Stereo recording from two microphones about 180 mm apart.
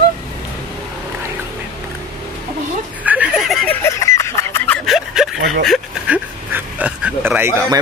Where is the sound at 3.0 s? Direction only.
5° right (ahead or behind).